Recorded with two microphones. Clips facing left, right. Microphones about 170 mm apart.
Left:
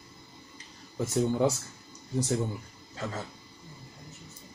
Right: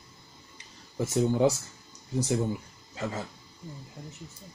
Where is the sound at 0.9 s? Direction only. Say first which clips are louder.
Right 1 dB; 10° right (ahead or behind).